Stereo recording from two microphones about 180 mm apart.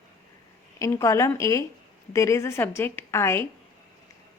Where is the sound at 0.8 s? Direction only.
15° left (ahead or behind).